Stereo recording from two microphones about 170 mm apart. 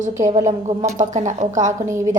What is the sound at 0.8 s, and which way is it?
Speech, 45° right (ahead or behind).